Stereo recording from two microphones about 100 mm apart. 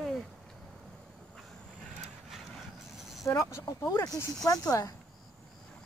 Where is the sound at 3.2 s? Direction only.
35° left (ahead or behind).